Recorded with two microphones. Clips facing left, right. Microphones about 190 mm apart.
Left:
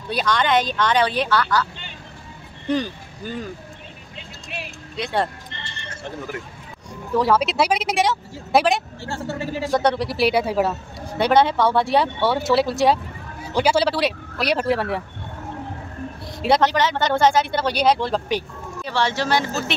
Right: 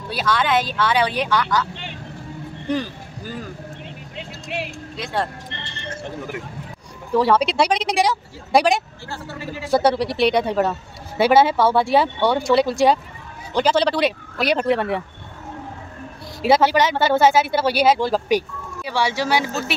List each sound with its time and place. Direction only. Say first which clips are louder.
0.1 s speech: left 1 dB; 5° right (ahead or behind)
2.7 s speech: left 1 dB; 5° right (ahead or behind)
4.2 s vehicle: right 7 dB; 70° right (ahead or behind)
4.9 s speech: left 2 dB; centre (ahead or behind)
7.2 s speech: right 2 dB; centre (ahead or behind)
9.1 s a man's voice: left 4 dB; 25° left (ahead or behind)
9.7 s speech: right 3 dB; 5° right (ahead or behind)
11.1 s speech: right 2 dB; 5° right (ahead or behind)
16.4 s speech: right 2 dB; 5° right (ahead or behind)